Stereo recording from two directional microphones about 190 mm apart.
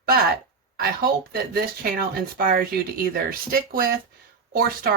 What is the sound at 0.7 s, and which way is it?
Speech, 50° right (ahead or behind).